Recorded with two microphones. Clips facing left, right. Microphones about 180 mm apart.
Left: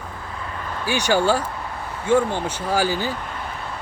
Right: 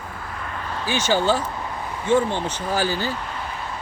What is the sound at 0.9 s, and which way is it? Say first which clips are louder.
Speech: left 1 dB; 15° left (ahead or behind).